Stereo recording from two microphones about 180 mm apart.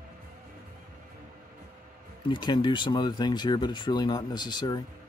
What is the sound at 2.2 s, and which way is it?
Speech, 25° left (ahead or behind).